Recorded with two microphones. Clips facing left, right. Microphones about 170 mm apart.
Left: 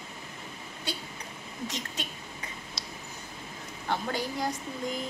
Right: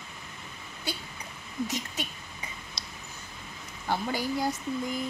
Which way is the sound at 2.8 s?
5° left (ahead or behind).